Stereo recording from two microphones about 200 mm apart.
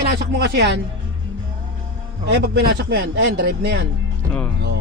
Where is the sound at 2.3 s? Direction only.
55° right (ahead or behind).